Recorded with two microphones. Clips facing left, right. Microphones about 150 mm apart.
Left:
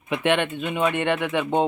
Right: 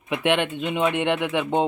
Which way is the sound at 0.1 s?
10° right (ahead or behind).